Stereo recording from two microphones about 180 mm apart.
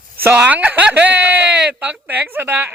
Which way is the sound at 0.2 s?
10° right (ahead or behind).